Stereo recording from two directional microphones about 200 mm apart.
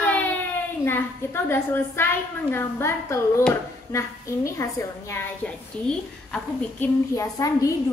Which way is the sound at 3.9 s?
15° left (ahead or behind).